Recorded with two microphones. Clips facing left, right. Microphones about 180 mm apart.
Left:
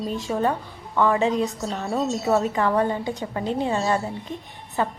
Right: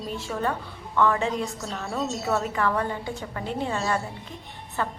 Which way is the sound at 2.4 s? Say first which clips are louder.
Left 4 dB; 20° left (ahead or behind).